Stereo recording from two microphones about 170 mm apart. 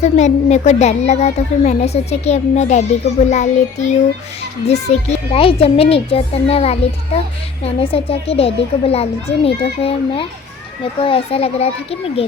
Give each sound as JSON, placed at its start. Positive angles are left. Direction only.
{"t": 0.0, "sound": "a woman's voice", "side_deg": 45}